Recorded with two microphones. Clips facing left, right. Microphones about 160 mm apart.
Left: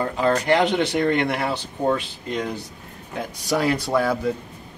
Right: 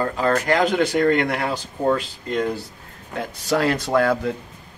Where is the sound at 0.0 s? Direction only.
15° left (ahead or behind).